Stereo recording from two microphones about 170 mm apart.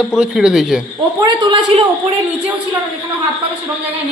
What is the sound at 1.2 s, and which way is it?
Speech, 25° right (ahead or behind).